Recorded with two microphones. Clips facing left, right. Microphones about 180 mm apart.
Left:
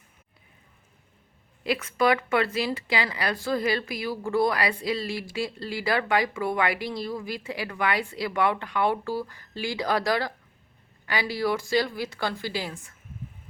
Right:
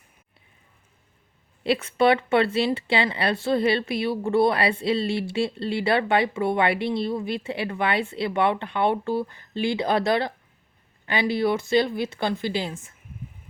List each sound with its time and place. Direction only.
1.6 s speech: 30° right (ahead or behind)